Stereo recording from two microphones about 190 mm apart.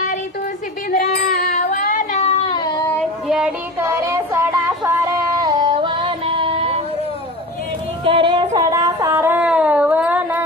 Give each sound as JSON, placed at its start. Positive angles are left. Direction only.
{"t": 0.9, "sound": "child singing", "side_deg": 45}
{"t": 5.4, "sound": "music", "side_deg": -20}
{"t": 8.0, "sound": "a sound", "side_deg": -25}